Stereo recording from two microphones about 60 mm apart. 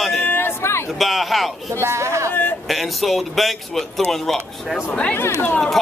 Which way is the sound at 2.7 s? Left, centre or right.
Centre.